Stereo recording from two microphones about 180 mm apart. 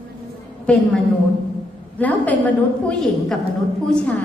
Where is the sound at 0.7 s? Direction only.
5° left (ahead or behind).